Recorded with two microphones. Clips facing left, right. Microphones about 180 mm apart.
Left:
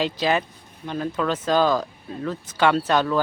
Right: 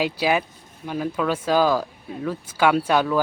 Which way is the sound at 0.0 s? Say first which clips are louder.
Right 1 dB; 10° right (ahead or behind).